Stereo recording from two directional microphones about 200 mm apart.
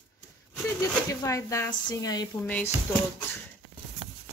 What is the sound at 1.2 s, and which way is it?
Speech, 15° left (ahead or behind).